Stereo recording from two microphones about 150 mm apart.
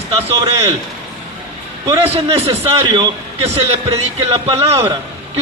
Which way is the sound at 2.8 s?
30° right (ahead or behind).